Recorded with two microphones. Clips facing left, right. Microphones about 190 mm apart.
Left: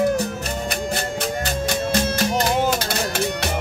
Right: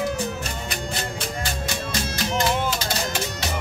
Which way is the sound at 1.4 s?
55° left (ahead or behind).